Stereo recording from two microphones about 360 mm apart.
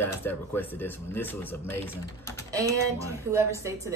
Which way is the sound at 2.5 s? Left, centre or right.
Centre.